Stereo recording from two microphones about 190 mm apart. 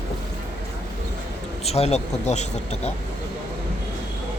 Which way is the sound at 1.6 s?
35° left (ahead or behind).